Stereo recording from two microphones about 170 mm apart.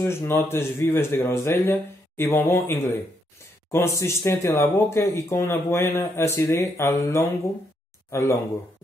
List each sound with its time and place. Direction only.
0.0 s speech: 15° left (ahead or behind)